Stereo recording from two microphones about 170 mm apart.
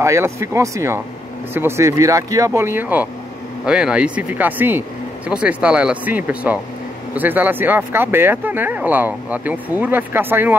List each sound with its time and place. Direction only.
0.0 s speech: 15° right (ahead or behind)